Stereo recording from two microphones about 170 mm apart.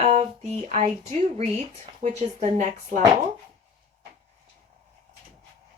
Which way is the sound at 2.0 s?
45° right (ahead or behind).